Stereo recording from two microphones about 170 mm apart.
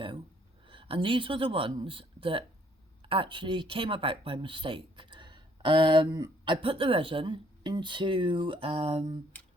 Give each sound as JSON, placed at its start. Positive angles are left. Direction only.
{"t": 0.7, "sound": "speech", "side_deg": -30}